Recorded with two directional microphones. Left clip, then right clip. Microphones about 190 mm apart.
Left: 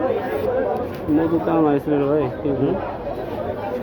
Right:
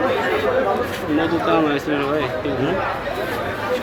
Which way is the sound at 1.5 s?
40° left (ahead or behind).